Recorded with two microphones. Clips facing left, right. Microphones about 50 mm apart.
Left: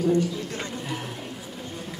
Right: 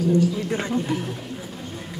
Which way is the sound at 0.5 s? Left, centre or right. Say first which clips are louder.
Right 7 dB; right.